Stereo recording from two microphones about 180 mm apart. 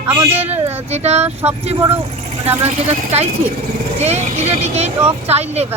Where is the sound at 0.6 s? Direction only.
35° right (ahead or behind).